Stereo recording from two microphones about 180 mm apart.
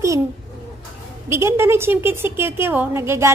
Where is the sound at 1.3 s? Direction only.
15° right (ahead or behind).